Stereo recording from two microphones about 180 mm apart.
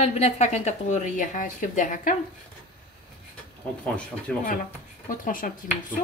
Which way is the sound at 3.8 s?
5° left (ahead or behind).